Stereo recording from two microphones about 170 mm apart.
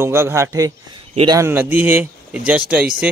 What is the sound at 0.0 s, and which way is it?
Speech, 15° right (ahead or behind).